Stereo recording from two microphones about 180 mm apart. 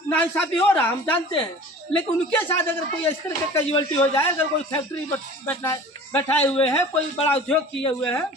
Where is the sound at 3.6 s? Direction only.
30° left (ahead or behind).